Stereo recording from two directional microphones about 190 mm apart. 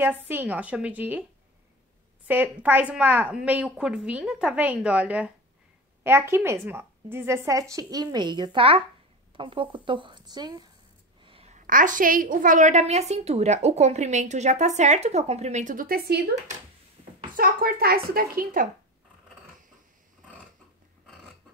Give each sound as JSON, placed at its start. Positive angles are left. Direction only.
{"t": 0.3, "sound": "a woman's voice", "side_deg": -10}
{"t": 2.2, "sound": "a woman's voice", "side_deg": -10}
{"t": 11.2, "sound": "a woman's voice", "side_deg": -30}
{"t": 17.4, "sound": "a woman's voice", "side_deg": -50}